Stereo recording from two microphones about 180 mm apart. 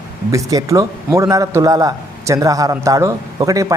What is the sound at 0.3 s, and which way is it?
A man's voice, 20° right (ahead or behind).